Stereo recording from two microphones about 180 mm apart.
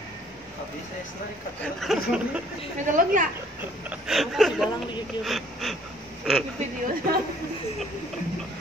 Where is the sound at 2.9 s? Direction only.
50° right (ahead or behind).